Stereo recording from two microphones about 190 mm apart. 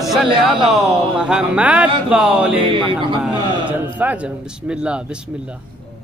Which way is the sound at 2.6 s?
25° right (ahead or behind).